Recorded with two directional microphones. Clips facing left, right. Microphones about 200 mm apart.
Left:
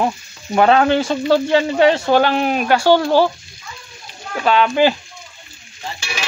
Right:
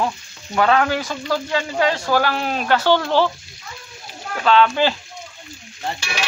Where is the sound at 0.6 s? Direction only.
25° left (ahead or behind).